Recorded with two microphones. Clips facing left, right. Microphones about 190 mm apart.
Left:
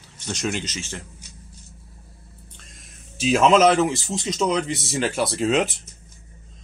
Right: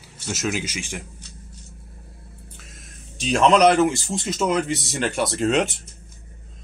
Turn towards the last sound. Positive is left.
turn(degrees=0)  # may be behind; listen again after turning